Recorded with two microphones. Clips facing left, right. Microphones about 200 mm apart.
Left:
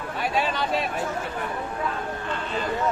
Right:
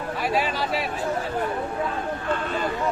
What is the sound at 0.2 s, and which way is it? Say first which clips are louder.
Speech: even; centre (ahead or behind).